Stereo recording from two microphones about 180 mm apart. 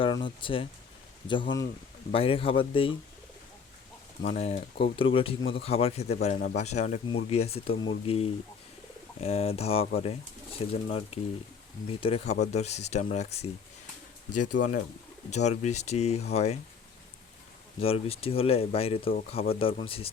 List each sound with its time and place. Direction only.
0.0 s speech: 25° left (ahead or behind)
4.3 s speech: 40° left (ahead or behind)
14.5 s speech: 45° left (ahead or behind)
17.7 s speech: 35° left (ahead or behind)